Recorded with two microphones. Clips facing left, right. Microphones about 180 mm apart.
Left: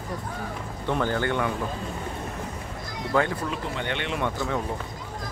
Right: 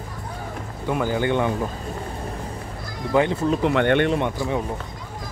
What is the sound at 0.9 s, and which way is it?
Speech, 10° right (ahead or behind).